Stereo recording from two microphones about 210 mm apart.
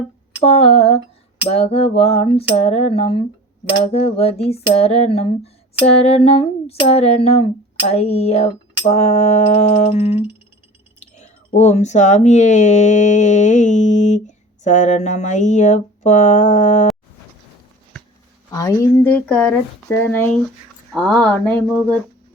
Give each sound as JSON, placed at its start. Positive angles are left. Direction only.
{"t": 0.4, "sound": "a sound", "side_deg": 25}
{"t": 8.9, "sound": "speech", "side_deg": 30}
{"t": 18.5, "sound": "speech", "side_deg": 15}